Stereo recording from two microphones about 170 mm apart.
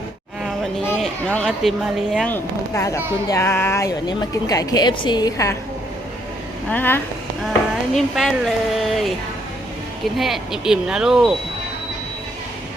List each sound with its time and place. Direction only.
0.9 s speech: 5° left (ahead or behind)
2.3 s a woman's voice: 15° left (ahead or behind)
6.7 s speech: 10° left (ahead or behind)
7.9 s speech: centre (ahead or behind)
10.2 s speech: centre (ahead or behind)